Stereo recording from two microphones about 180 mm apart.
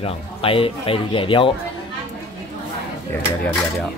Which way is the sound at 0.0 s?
30° left (ahead or behind).